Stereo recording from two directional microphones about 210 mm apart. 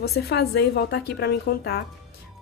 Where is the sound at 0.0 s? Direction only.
50° left (ahead or behind).